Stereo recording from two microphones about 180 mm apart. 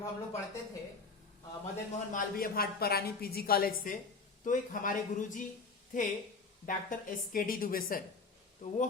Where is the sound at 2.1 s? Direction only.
50° left (ahead or behind).